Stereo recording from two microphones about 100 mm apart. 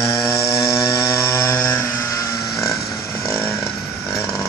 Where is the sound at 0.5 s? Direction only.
30° left (ahead or behind).